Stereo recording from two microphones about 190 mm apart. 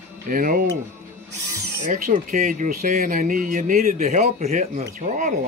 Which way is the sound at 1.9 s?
45° right (ahead or behind).